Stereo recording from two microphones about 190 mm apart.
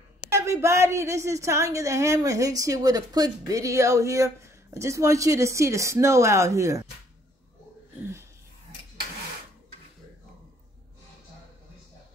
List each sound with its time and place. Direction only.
0.3 s a woman's voice: 15° right (ahead or behind)